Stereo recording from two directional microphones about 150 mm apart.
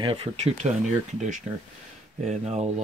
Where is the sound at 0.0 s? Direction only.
35° right (ahead or behind).